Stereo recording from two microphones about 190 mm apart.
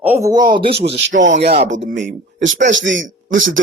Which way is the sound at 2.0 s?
70° right (ahead or behind).